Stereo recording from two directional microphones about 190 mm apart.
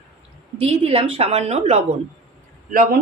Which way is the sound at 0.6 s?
30° right (ahead or behind).